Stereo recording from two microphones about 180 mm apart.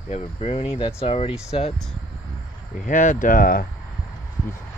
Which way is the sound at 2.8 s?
45° left (ahead or behind).